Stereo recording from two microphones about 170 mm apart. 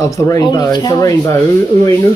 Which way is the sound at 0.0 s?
20° left (ahead or behind).